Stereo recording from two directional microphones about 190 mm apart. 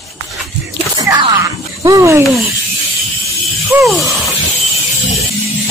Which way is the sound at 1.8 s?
15° right (ahead or behind).